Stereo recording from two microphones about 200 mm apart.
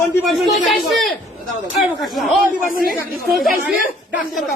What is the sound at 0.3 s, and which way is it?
Speech, centre (ahead or behind).